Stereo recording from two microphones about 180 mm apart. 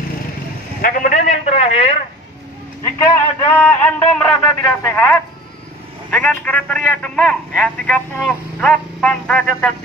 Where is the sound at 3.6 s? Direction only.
5° left (ahead or behind).